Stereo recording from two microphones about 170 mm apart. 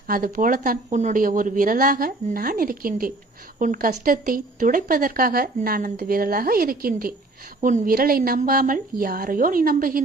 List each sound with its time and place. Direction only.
0.1 s speech: 55° right (ahead or behind)